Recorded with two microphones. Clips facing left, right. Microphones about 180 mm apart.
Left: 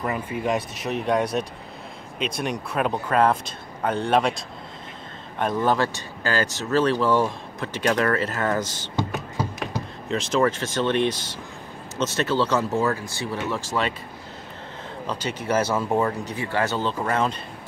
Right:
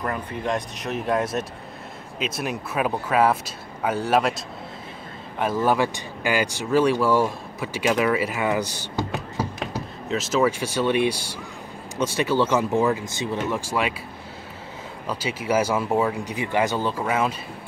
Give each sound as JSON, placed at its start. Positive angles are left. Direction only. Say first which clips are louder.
{"t": 0.0, "sound": "speech", "louder": "left 1 dB", "side_deg": 5}
{"t": 5.4, "sound": "speech", "louder": "right 1 dB", "side_deg": -5}
{"t": 8.7, "sound": "music", "louder": "even", "side_deg": -10}
{"t": 10.0, "sound": "speech", "louder": "even", "side_deg": -5}
{"t": 15.0, "sound": "speech", "louder": "right 1 dB", "side_deg": -10}